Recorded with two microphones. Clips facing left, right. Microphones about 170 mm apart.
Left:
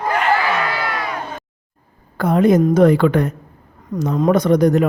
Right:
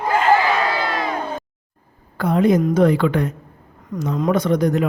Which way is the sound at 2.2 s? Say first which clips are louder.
Left 3 dB; 45° left (ahead or behind).